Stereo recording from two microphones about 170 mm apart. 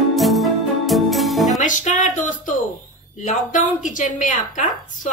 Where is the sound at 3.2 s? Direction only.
50° left (ahead or behind).